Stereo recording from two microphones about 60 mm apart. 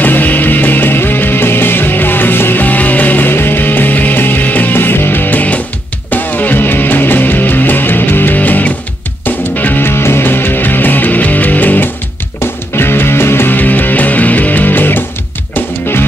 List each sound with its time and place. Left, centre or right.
0.0 s music: left
12.7 s music: left